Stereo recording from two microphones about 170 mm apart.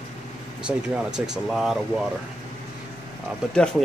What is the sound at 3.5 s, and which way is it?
Speech, 5° left (ahead or behind).